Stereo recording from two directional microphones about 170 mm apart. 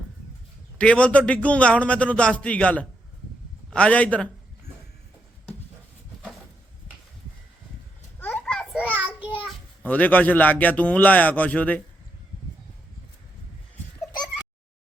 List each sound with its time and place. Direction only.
0.8 s a man's voice: 5° left (ahead or behind)
8.2 s a sound: 5° left (ahead or behind)
9.8 s a man's voice: 10° left (ahead or behind)